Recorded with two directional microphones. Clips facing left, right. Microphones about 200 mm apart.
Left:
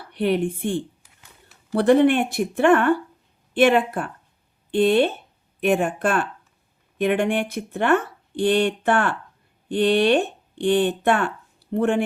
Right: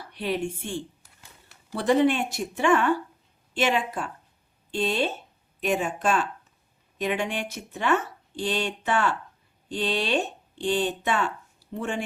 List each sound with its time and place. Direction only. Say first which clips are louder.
0.1 s speech: left 7 dB; 60° left (ahead or behind)